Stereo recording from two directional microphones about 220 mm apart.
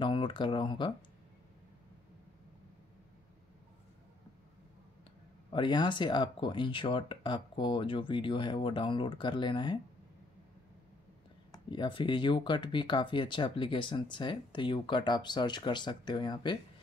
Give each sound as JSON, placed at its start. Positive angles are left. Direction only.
{"t": 0.0, "sound": "speech", "side_deg": 20}
{"t": 5.5, "sound": "speech", "side_deg": 20}
{"t": 11.5, "sound": "speech", "side_deg": 20}